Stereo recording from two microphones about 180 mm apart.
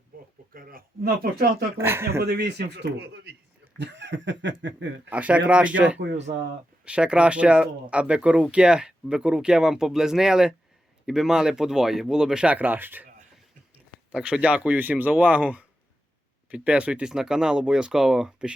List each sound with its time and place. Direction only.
0.5 s speech: 55° right (ahead or behind)
1.8 s speech: 10° right (ahead or behind)
2.2 s a man's voice: 65° right (ahead or behind)
3.8 s snicker: 80° right
4.6 s speech: 90° right
5.0 s speech: 10° right (ahead or behind)
6.0 s a man's voice: 75° right (ahead or behind)
6.8 s speech: 5° right (ahead or behind)